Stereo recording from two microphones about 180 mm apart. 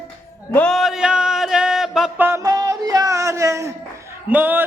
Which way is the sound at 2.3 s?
15° right (ahead or behind).